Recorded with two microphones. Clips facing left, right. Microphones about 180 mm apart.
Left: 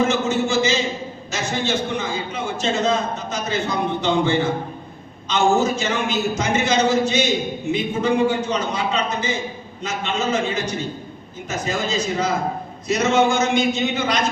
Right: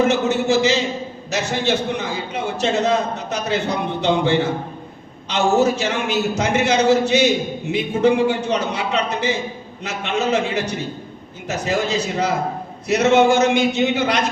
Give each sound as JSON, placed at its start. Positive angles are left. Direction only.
{"t": 0.1, "sound": "a man's voice", "side_deg": -65}